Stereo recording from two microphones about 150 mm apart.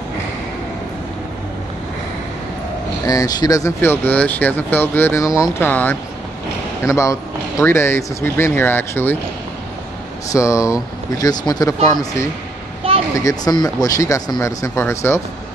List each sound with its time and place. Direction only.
3.1 s speech: 25° left (ahead or behind)
10.3 s speech: 20° left (ahead or behind)
12.8 s a sound: 35° right (ahead or behind)
13.2 s speech: 25° left (ahead or behind)